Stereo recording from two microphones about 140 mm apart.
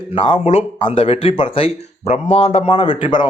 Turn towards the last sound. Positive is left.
turn(degrees=35)  # may be behind; listen again after turning